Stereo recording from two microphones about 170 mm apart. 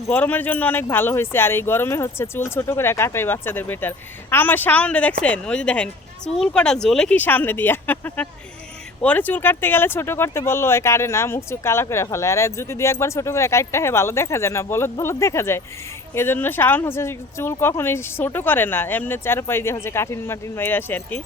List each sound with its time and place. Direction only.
0.1 s speech: 10° left (ahead or behind)